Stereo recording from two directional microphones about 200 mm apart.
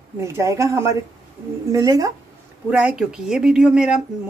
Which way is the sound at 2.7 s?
5° right (ahead or behind).